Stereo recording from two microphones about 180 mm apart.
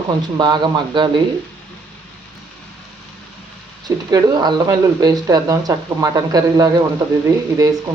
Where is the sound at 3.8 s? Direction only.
20° right (ahead or behind).